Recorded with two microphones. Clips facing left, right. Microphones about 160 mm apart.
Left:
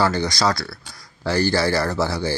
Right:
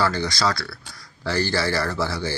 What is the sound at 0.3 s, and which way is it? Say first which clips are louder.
Speech: left 3 dB; 40° left (ahead or behind).